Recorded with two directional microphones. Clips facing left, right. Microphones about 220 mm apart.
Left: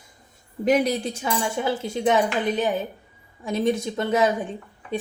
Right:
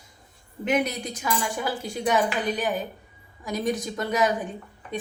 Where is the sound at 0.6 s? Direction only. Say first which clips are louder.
Left 5 dB; 35° left (ahead or behind).